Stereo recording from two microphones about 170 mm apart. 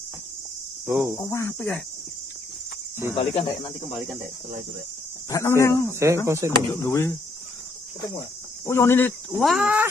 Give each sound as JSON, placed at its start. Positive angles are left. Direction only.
{"t": 0.8, "sound": "speech", "side_deg": -5}
{"t": 1.1, "sound": "cricket", "side_deg": 15}
{"t": 3.2, "sound": "speech", "side_deg": 35}
{"t": 5.3, "sound": "cricket", "side_deg": 20}
{"t": 5.9, "sound": "speech", "side_deg": -15}
{"t": 6.8, "sound": "cricket", "side_deg": 15}
{"t": 8.6, "sound": "cricket", "side_deg": 15}
{"t": 9.4, "sound": "speech", "side_deg": -5}